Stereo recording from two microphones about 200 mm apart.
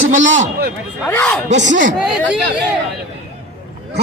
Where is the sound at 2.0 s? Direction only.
5° right (ahead or behind).